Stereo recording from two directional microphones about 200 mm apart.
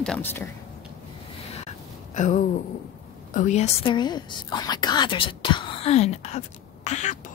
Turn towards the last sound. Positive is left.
turn(degrees=35)  # may be behind; listen again after turning